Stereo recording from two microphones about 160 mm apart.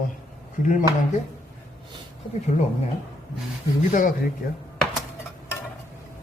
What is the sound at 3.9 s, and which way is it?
Speech, 55° left (ahead or behind).